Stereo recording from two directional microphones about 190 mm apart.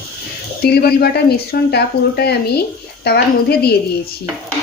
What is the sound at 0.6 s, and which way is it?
Speech, 55° left (ahead or behind).